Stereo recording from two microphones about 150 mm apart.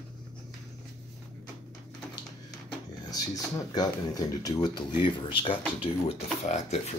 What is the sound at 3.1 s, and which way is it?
Speech, 25° left (ahead or behind).